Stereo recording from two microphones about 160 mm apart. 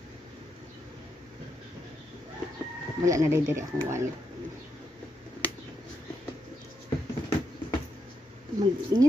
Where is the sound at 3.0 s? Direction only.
20° right (ahead or behind).